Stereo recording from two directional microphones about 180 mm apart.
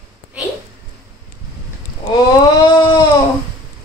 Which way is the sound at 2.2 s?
25° left (ahead or behind).